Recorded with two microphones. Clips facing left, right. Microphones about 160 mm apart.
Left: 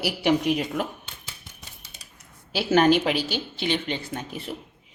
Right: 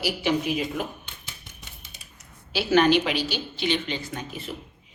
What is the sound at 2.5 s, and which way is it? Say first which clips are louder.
A woman's voice: left 1 dB; 50° left (ahead or behind).